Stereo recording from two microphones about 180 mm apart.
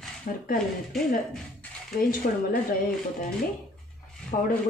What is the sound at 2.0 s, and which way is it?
Speech, 55° left (ahead or behind).